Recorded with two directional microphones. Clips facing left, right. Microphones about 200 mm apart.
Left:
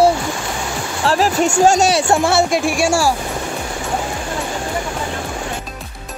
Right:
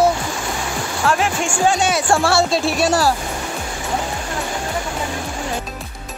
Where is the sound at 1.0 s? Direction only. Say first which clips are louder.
Left 4 dB; 35° left (ahead or behind).